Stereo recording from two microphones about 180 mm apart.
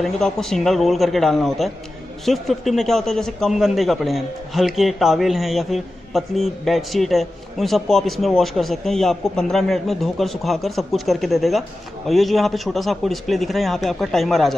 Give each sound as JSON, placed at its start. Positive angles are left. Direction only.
{"t": 0.0, "sound": "a man's voice", "side_deg": 0}